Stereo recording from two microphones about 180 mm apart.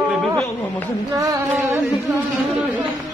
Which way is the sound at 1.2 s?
20° right (ahead or behind).